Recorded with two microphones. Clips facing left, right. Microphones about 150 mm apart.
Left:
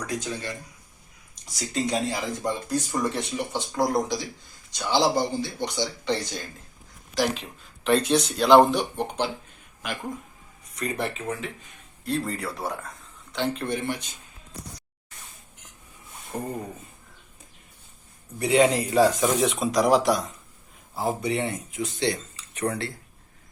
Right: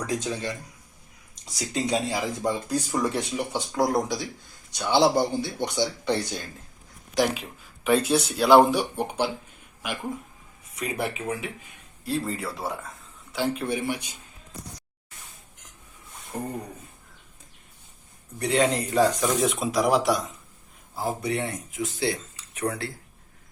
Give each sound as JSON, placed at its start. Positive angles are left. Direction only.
{"t": 0.1, "sound": "speech", "side_deg": -20}
{"t": 1.5, "sound": "speech", "side_deg": -10}
{"t": 16.3, "sound": "speech", "side_deg": 5}
{"t": 18.3, "sound": "speech", "side_deg": 10}